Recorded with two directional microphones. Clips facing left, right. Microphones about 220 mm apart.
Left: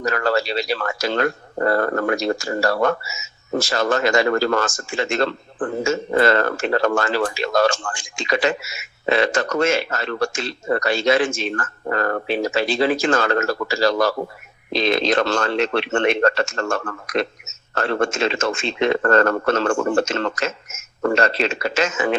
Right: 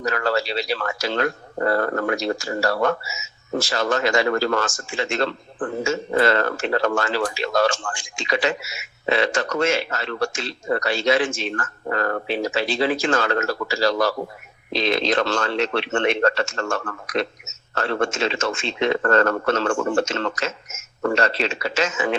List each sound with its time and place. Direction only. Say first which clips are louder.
0.0 s speech: left 2 dB; 45° left (ahead or behind)